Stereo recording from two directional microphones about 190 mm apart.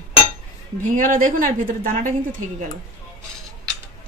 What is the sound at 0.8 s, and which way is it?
A woman's voice, 45° right (ahead or behind).